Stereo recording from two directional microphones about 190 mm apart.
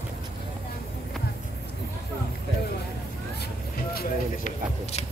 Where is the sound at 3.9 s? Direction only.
50° left (ahead or behind).